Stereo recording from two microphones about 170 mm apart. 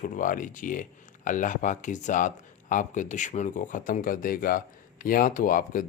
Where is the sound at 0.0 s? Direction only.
50° left (ahead or behind).